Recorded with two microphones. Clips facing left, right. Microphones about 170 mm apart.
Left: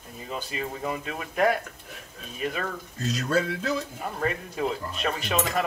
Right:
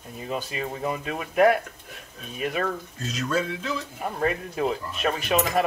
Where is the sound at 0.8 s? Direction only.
10° right (ahead or behind).